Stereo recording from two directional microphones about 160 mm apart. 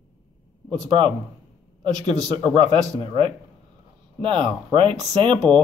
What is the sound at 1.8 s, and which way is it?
Speech, 25° right (ahead or behind).